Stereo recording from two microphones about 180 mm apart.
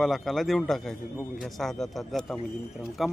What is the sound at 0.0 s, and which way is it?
Speech, centre (ahead or behind).